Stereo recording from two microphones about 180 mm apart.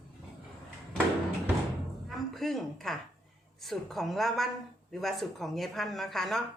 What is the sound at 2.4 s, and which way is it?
Speech, centre (ahead or behind).